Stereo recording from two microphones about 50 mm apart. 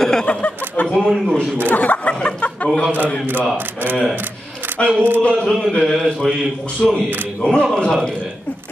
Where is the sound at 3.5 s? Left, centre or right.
Right.